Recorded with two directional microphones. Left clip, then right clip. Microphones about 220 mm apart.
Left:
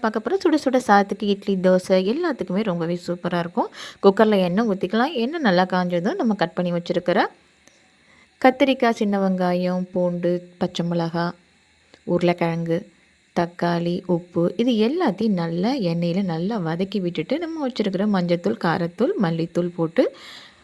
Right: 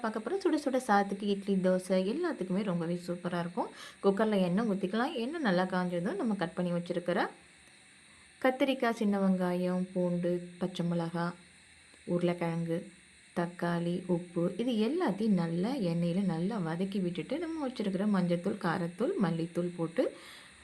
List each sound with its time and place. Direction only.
0.0 s a woman's voice: 40° left (ahead or behind)
8.4 s a woman's voice: 35° left (ahead or behind)